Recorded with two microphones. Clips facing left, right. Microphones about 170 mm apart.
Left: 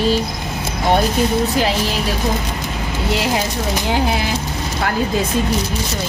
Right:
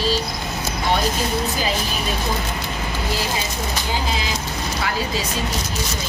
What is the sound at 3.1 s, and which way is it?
Speech, 70° left (ahead or behind).